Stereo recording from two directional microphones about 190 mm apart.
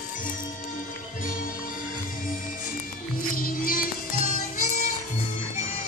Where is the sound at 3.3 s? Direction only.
45° left (ahead or behind).